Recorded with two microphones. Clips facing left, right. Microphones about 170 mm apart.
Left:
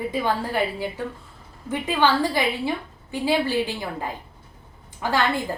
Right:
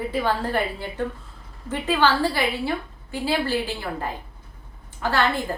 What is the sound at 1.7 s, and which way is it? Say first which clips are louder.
A woman's voice: even; 15° left (ahead or behind).